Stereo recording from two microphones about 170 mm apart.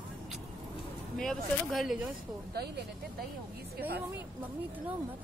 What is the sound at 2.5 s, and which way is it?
Speech, 70° right (ahead or behind).